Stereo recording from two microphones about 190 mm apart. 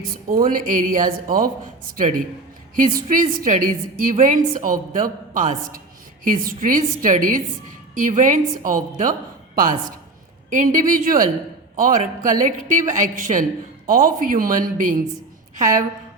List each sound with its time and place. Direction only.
0.0 s a woman's voice: 50° right (ahead or behind)
10.5 s a woman's voice: 45° right (ahead or behind)